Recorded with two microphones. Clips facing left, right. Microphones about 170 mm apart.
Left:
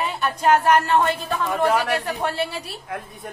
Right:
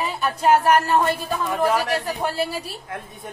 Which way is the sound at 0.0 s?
5° right (ahead or behind).